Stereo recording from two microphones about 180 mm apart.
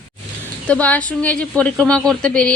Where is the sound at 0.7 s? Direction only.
5° left (ahead or behind).